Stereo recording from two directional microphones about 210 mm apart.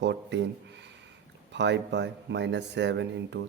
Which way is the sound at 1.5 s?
55° right (ahead or behind).